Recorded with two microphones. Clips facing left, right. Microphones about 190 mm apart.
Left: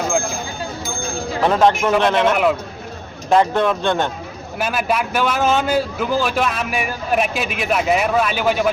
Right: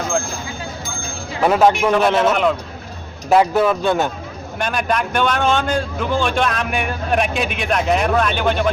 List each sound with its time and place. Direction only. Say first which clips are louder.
1.4 s a man's voice: right 1 dB; 5° right (ahead or behind)
2.3 s a man's voice: even; 5° left (ahead or behind)
3.2 s speech: right 1 dB; 5° right (ahead or behind)
4.5 s a man's voice: even; 5° left (ahead or behind)